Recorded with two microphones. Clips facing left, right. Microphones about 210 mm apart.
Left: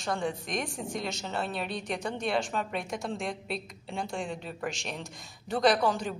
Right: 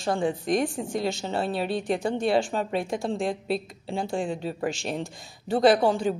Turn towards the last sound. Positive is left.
turn(degrees=-30)  # may be behind; listen again after turning